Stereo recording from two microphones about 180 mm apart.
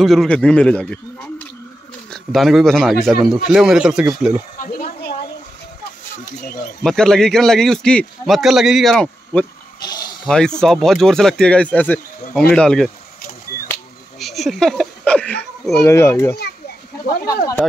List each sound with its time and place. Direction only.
0.0 s a man's voice: centre (ahead or behind)
2.0 s a man's voice: centre (ahead or behind)
6.2 s speech: 60° left (ahead or behind)
6.8 s a man's voice: 5° left (ahead or behind)
9.8 s a sound: 25° left (ahead or behind)
10.2 s a man's voice: 5° left (ahead or behind)
14.2 s a man's voice: centre (ahead or behind)
15.9 s a child's voice: 15° left (ahead or behind)